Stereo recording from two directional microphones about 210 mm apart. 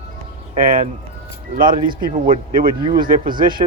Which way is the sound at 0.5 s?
40° right (ahead or behind).